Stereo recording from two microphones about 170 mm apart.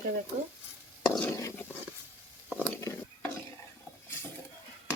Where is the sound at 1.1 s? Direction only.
15° left (ahead or behind).